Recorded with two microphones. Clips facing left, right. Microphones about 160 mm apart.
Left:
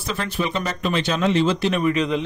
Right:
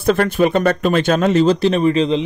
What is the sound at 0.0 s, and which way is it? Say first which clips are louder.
Speech: right 11 dB; 55° right (ahead or behind).